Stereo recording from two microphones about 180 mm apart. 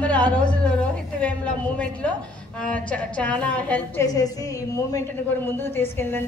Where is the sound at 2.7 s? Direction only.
5° left (ahead or behind).